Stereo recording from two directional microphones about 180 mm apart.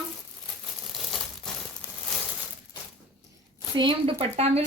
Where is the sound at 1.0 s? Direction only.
Centre (ahead or behind).